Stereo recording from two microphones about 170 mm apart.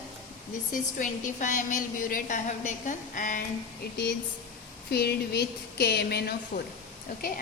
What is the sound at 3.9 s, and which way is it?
Speech, 90° left.